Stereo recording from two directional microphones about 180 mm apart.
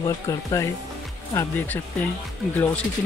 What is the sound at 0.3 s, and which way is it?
Speech, 20° left (ahead or behind).